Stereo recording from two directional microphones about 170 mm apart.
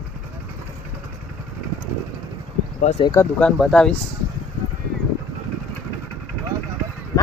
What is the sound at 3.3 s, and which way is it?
Speech, 5° left (ahead or behind).